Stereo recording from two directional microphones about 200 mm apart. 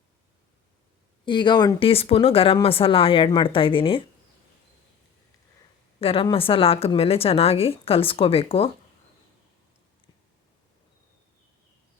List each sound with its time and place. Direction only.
1.2 s speech: 25° left (ahead or behind)
6.0 s speech: 30° left (ahead or behind)